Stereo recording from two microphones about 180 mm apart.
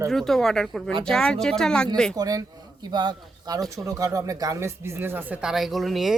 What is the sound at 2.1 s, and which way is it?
Speech, 20° right (ahead or behind).